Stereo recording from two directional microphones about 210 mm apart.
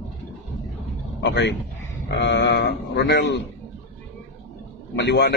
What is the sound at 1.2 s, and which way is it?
A man's voice, 60° left (ahead or behind).